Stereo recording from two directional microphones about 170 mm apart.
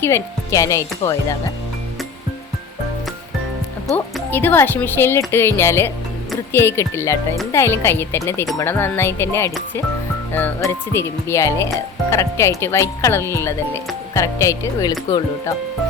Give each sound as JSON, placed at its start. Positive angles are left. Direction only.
{"t": 0.0, "sound": "speech", "side_deg": 15}
{"t": 3.8, "sound": "speech", "side_deg": 10}